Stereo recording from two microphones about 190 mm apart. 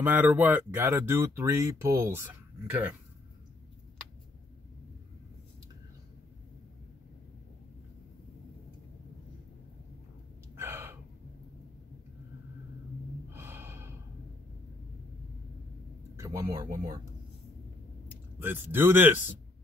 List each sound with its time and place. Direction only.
0.0 s speech: 10° right (ahead or behind)
10.5 s gasp: 15° right (ahead or behind)
13.3 s gasp: 10° right (ahead or behind)
16.2 s speech: 15° right (ahead or behind)
18.4 s speech: 10° right (ahead or behind)